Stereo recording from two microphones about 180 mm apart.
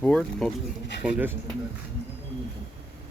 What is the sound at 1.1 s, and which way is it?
Speech, 10° right (ahead or behind).